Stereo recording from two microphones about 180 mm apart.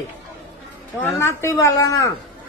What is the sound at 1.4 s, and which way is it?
Speech, 20° left (ahead or behind).